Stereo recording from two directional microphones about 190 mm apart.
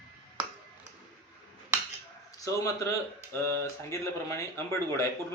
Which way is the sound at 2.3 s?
15° left (ahead or behind).